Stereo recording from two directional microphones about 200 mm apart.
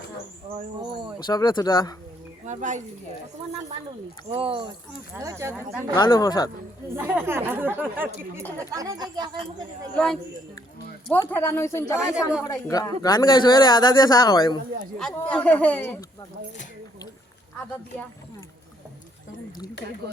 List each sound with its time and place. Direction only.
1.2 s speech: 20° left (ahead or behind)
2.5 s speech: 40° right (ahead or behind)
4.3 s speech: 25° right (ahead or behind)
5.1 s speech: 15° right (ahead or behind)
6.0 s speech: 20° left (ahead or behind)
6.9 s speech: 10° right (ahead or behind)
9.9 s a woman's voice: 5° left (ahead or behind)
11.9 s a woman's voice: 5° right (ahead or behind)
12.5 s speech: 15° left (ahead or behind)
15.1 s speech: 5° left (ahead or behind)